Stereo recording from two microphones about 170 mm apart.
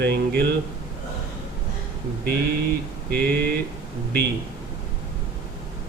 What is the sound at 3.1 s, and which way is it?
Speech, 65° right (ahead or behind).